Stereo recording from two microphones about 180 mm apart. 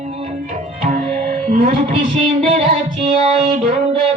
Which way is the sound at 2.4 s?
35° right (ahead or behind).